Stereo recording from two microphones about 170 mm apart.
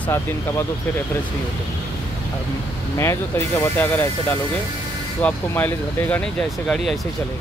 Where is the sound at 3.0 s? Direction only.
15° left (ahead or behind).